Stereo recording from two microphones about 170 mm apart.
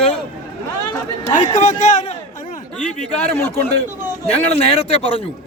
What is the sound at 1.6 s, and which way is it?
Speech, 45° left (ahead or behind).